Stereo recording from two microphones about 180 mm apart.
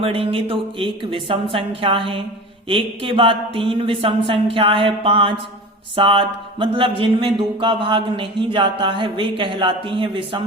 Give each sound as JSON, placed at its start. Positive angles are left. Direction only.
{"t": 0.0, "sound": "speech", "side_deg": -30}